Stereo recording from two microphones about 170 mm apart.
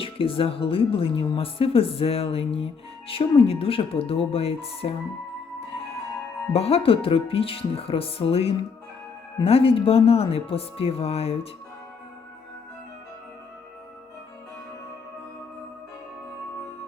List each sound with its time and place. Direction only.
0.0 s speech: 30° left (ahead or behind)
5.5 s music: 35° left (ahead or behind)
6.5 s speech: 35° left (ahead or behind)